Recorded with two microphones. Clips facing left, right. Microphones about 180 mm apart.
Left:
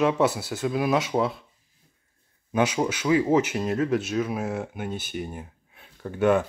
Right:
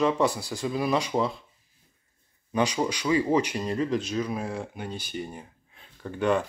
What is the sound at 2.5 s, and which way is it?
A man's voice, 5° left (ahead or behind).